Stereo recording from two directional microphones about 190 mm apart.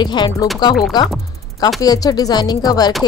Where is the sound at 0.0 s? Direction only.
25° left (ahead or behind).